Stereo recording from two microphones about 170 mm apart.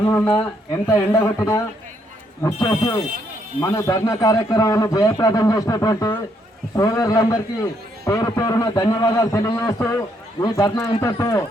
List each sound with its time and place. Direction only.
0.0 s a man's voice: 15° left (ahead or behind)